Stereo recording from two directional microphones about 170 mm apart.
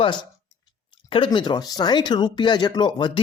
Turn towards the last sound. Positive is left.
turn(degrees=25)  # may be behind; listen again after turning